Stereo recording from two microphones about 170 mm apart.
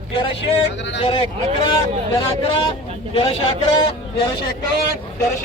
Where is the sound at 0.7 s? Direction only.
90° left.